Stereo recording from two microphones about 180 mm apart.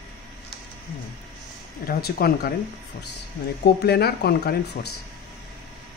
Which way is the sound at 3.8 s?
65° left (ahead or behind).